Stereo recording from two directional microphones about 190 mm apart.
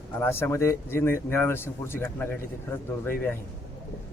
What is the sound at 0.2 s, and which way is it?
Speech, 10° left (ahead or behind).